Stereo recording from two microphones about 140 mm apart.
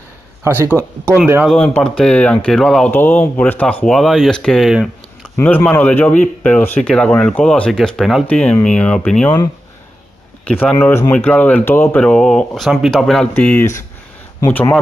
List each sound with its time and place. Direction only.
0.4 s speech: 15° right (ahead or behind)
1.5 s speech: 5° left (ahead or behind)
2.9 s speech: 15° left (ahead or behind)
5.3 s speech: 10° left (ahead or behind)
10.6 s speech: 10° left (ahead or behind)